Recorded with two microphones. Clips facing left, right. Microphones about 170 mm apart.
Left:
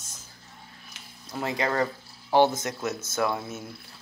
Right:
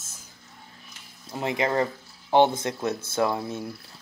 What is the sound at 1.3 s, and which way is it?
Speech, 20° right (ahead or behind).